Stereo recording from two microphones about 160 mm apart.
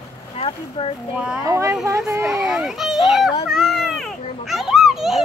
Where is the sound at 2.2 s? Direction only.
5° right (ahead or behind).